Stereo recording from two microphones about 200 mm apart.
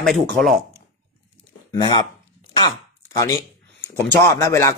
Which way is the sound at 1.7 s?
20° left (ahead or behind).